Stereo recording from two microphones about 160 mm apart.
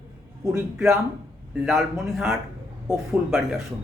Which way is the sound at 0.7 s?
5° right (ahead or behind).